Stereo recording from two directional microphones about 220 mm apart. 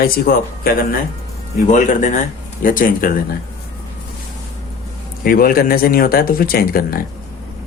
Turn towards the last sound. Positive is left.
turn(degrees=45)  # may be behind; listen again after turning